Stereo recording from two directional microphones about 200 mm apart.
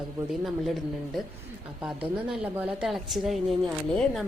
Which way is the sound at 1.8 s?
5° right (ahead or behind).